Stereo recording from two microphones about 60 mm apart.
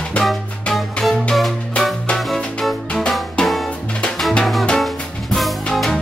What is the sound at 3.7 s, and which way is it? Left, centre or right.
Music, centre.